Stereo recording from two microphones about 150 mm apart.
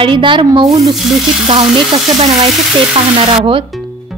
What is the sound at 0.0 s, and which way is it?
Speech, 35° right (ahead or behind).